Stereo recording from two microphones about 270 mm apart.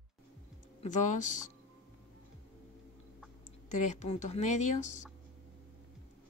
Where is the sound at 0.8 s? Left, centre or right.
Left.